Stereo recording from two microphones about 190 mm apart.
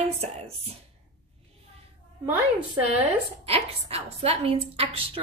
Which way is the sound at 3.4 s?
30° right (ahead or behind).